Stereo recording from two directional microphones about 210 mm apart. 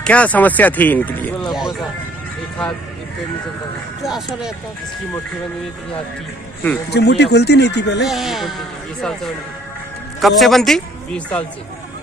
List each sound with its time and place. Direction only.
0.0 s speech: 5° left (ahead or behind)
1.5 s music: centre (ahead or behind)
4.0 s speech: centre (ahead or behind)
6.9 s speech: 50° left (ahead or behind)
8.1 s speech: centre (ahead or behind)